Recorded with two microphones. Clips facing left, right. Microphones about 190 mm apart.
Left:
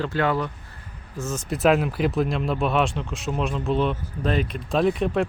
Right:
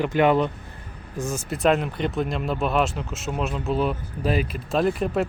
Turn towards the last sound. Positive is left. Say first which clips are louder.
# left 1 dB
turn(degrees=0)  # may be behind; listen again after turning